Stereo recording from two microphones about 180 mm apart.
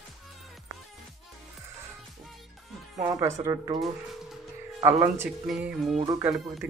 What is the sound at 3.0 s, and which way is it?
Speech, 20° right (ahead or behind).